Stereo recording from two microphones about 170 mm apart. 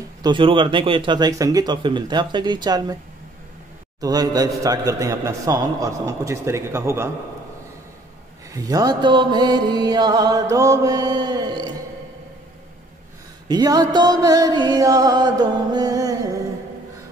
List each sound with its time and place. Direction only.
0.2 s mantra: 30° right (ahead or behind)
4.0 s mantra: 20° right (ahead or behind)
8.5 s mantra: 20° right (ahead or behind)
13.5 s mantra: 25° right (ahead or behind)